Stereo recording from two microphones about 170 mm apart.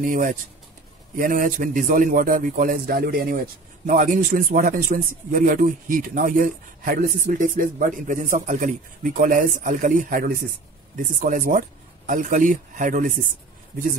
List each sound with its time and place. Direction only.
0.0 s speech: 50° right (ahead or behind)